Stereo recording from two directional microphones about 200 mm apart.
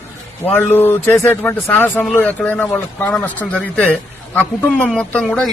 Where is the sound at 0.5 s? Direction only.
10° left (ahead or behind).